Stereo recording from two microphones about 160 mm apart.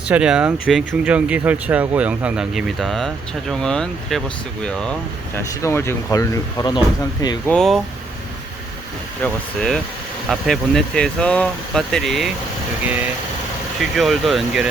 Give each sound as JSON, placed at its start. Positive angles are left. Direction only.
{"t": 0.1, "sound": "speech", "side_deg": -5}
{"t": 7.4, "sound": "speech", "side_deg": 5}
{"t": 9.2, "sound": "speech", "side_deg": 0}
{"t": 12.8, "sound": "speech", "side_deg": -10}